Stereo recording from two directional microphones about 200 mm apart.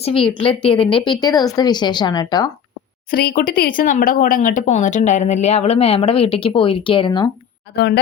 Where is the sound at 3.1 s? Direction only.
50° left (ahead or behind); by 7.3 s 25° left (ahead or behind).